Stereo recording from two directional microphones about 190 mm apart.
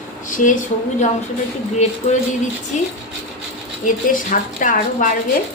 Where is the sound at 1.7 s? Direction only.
40° left (ahead or behind).